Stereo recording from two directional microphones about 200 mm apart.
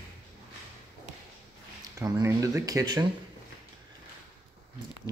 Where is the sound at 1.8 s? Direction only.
15° right (ahead or behind).